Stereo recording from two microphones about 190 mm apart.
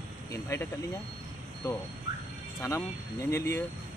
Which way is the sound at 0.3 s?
15° left (ahead or behind).